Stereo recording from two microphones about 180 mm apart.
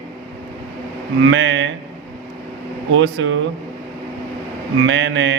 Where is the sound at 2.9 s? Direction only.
85° right.